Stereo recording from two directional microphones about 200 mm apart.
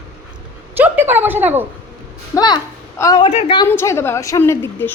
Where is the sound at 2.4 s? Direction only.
20° left (ahead or behind).